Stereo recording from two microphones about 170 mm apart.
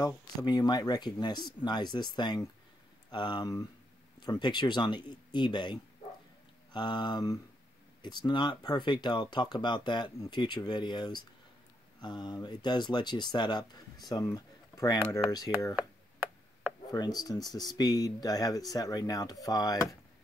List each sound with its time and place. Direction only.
0.0 s speech: 20° left (ahead or behind)
16.9 s speech: 25° left (ahead or behind)